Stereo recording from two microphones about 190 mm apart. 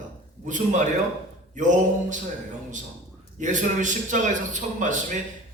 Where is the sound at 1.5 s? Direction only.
40° right (ahead or behind).